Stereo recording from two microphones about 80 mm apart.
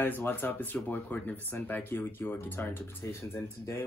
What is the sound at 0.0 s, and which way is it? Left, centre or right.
Speech, left.